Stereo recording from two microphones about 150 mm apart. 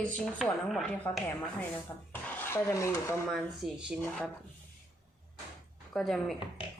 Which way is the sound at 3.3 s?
Centre (ahead or behind).